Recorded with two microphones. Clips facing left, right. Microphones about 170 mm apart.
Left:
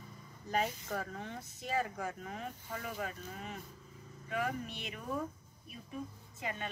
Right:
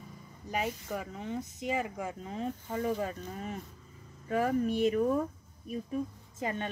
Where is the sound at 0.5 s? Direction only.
10° right (ahead or behind); by 5.0 s 45° right (ahead or behind).